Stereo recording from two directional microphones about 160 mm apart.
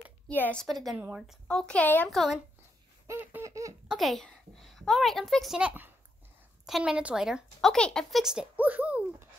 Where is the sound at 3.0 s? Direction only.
15° right (ahead or behind).